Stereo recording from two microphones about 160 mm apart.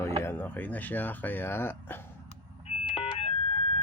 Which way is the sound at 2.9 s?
35° left (ahead or behind).